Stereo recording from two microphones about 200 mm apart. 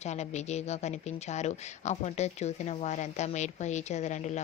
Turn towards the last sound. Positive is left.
turn(degrees=35)  # may be behind; listen again after turning